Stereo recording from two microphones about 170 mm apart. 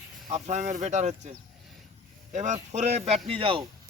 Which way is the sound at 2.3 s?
45° right (ahead or behind).